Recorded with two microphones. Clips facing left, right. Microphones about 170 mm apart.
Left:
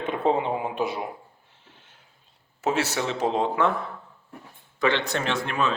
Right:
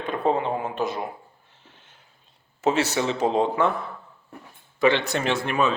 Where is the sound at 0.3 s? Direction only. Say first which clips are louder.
Even; 15° left (ahead or behind).